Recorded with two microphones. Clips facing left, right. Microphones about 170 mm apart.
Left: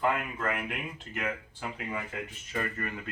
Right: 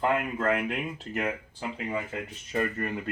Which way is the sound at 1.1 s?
40° right (ahead or behind).